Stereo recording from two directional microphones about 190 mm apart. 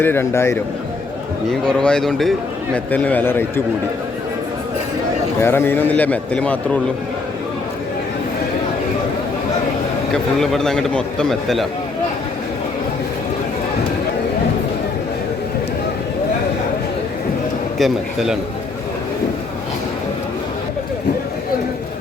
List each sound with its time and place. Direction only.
0.0 s a man's voice: 10° left (ahead or behind)
5.4 s a man's voice: 10° left (ahead or behind)
10.4 s a man's voice: centre (ahead or behind)
17.7 s a man's voice: centre (ahead or behind)